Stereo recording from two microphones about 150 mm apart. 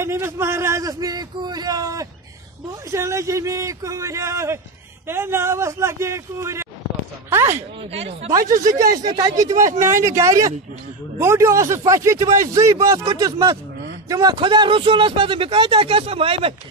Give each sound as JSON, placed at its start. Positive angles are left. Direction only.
{"t": 0.0, "sound": "speech", "side_deg": -15}
{"t": 7.5, "sound": "speech", "side_deg": -45}
{"t": 8.6, "sound": "a man's voice", "side_deg": -25}
{"t": 14.4, "sound": "speech", "side_deg": -30}